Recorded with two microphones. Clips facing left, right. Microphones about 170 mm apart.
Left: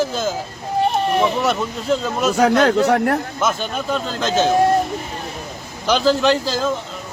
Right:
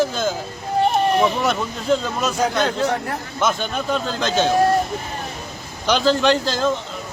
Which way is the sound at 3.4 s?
Centre (ahead or behind).